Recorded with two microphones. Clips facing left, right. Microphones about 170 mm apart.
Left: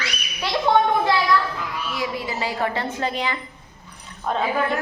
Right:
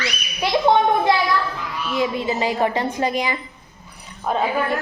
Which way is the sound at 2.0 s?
20° right (ahead or behind).